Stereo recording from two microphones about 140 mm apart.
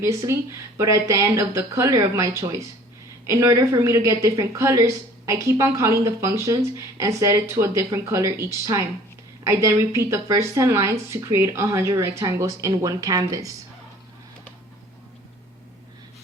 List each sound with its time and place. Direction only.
0.0 s speech: 20° right (ahead or behind)